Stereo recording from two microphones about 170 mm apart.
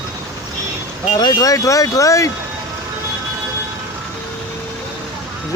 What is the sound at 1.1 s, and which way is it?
Speech, 25° left (ahead or behind).